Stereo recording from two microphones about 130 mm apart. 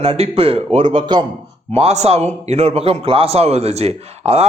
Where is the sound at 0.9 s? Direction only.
35° right (ahead or behind).